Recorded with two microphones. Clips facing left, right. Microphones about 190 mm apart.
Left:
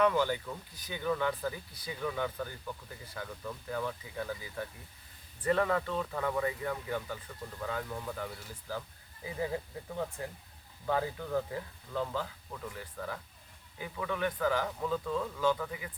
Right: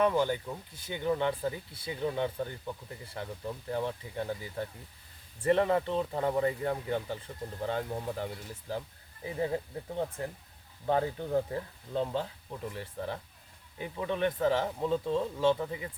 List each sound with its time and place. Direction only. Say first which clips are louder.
0.0 s speech: right 1 dB; 25° right (ahead or behind)